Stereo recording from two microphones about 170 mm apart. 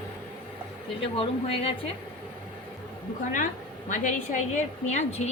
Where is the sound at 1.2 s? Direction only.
35° left (ahead or behind).